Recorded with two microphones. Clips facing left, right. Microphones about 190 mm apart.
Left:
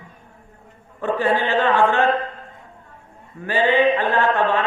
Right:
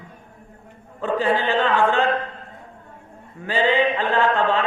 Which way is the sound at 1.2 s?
15° right (ahead or behind).